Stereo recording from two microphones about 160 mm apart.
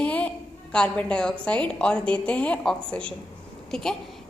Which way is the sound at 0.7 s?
5° left (ahead or behind).